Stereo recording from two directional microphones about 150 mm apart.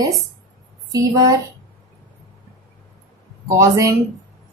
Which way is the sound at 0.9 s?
25° right (ahead or behind).